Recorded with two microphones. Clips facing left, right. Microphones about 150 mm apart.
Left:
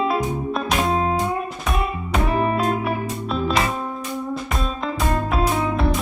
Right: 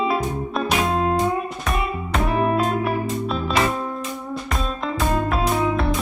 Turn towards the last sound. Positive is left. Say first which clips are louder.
# even
turn(degrees=0)  # may be behind; listen again after turning